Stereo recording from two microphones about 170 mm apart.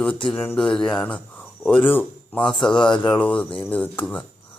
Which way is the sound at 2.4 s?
25° left (ahead or behind).